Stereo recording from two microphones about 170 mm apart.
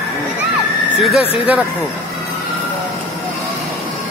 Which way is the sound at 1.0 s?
Centre (ahead or behind).